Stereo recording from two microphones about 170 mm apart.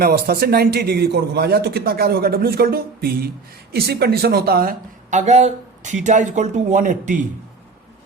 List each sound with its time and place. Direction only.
0.0 s a man's voice: 65° right (ahead or behind)
5.2 s speech: 40° right (ahead or behind)